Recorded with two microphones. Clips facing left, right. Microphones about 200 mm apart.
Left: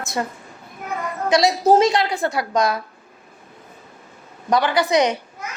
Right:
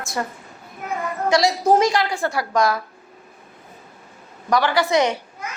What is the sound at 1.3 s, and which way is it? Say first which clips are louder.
A woman's voice: left 2 dB; 20° left (ahead or behind).